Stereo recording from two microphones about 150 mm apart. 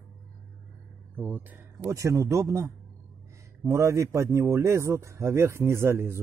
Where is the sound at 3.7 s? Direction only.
20° right (ahead or behind).